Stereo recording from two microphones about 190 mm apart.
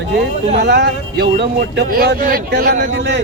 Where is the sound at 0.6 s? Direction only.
60° right (ahead or behind).